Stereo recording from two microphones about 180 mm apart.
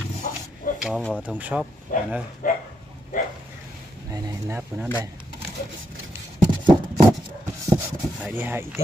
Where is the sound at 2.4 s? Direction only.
50° left (ahead or behind).